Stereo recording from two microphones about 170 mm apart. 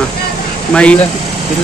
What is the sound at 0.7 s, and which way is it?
Speech, 5° left (ahead or behind).